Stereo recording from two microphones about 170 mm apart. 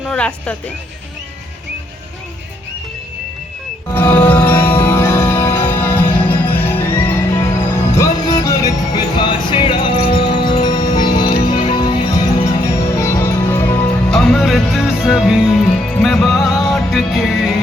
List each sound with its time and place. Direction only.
0.0 s speech: 5° left (ahead or behind)
3.9 s music: 10° left (ahead or behind)